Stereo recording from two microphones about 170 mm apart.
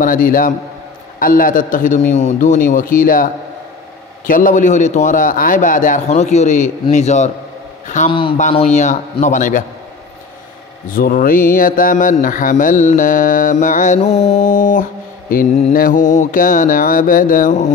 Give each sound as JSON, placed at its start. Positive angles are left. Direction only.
{"t": 0.0, "sound": "speech", "side_deg": 55}
{"t": 4.3, "sound": "a man's voice", "side_deg": 50}
{"t": 8.1, "sound": "speech", "side_deg": 30}
{"t": 8.4, "sound": "speech", "side_deg": 40}
{"t": 10.9, "sound": "speech", "side_deg": 55}